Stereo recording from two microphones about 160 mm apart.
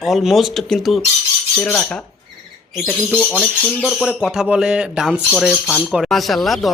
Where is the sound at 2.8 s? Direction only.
Centre (ahead or behind).